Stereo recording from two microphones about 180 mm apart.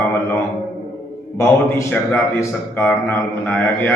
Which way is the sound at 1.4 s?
10° left (ahead or behind).